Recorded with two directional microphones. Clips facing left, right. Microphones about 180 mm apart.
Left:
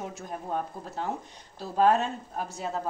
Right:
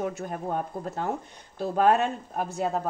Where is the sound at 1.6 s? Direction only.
60° right (ahead or behind).